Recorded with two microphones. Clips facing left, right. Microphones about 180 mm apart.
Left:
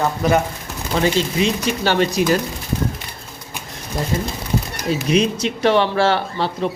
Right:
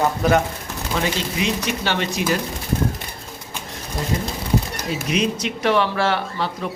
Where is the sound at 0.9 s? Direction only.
30° left (ahead or behind).